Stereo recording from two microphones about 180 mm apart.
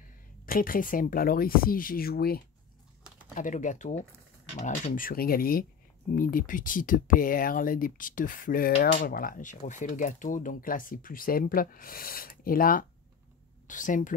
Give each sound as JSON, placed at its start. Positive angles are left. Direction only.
{"t": 0.5, "sound": "speech", "side_deg": 50}
{"t": 3.3, "sound": "speech", "side_deg": 45}